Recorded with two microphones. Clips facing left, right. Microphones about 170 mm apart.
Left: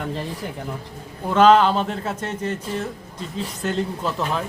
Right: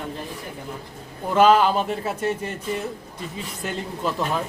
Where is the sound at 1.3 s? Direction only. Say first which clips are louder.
Left 2 dB; 5° right (ahead or behind).